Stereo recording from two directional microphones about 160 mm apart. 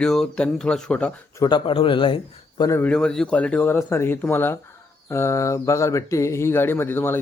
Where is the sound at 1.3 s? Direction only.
25° left (ahead or behind).